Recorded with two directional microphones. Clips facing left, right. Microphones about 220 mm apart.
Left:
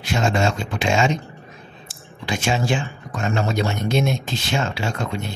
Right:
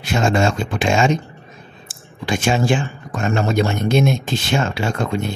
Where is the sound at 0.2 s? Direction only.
50° right (ahead or behind).